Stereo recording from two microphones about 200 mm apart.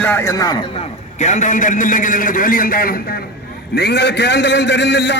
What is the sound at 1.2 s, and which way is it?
A man's voice, 35° left (ahead or behind).